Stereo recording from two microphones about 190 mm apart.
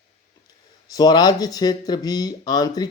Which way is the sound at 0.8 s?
20° left (ahead or behind).